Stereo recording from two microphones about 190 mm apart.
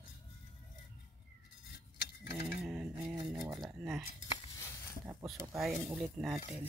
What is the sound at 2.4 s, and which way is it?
Cutlery, 5° right (ahead or behind).